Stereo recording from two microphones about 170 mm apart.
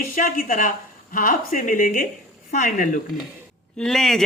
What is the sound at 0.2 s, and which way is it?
A woman's voice, 55° left (ahead or behind).